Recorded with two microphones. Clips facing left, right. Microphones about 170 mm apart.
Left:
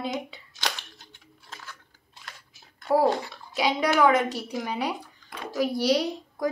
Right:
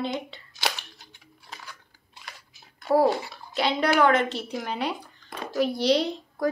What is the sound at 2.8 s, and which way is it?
Speech, 5° right (ahead or behind).